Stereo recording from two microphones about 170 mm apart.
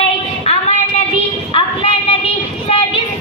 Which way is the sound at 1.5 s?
35° left (ahead or behind).